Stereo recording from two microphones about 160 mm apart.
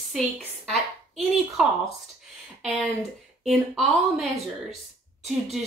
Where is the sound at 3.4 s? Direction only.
Centre (ahead or behind).